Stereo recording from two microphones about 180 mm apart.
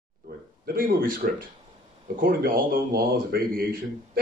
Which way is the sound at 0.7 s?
50° right (ahead or behind).